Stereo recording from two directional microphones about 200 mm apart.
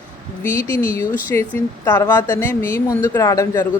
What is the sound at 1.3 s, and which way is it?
Speech, 10° left (ahead or behind).